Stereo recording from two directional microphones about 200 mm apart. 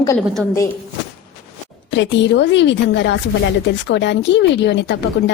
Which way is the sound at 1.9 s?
65° left (ahead or behind).